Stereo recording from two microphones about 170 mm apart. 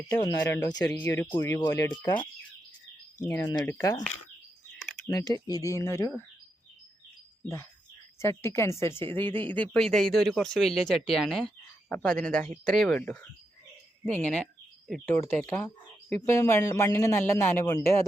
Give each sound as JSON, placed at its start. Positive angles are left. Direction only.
{"t": 0.2, "sound": "speech", "side_deg": 25}
{"t": 2.0, "sound": "speech", "side_deg": 25}
{"t": 5.5, "sound": "speech", "side_deg": 20}
{"t": 7.4, "sound": "speech", "side_deg": 15}